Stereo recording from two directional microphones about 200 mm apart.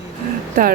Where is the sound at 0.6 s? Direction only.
45° right (ahead or behind).